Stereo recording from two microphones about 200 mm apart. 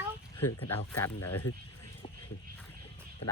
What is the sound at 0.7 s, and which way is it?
Speech, 10° left (ahead or behind).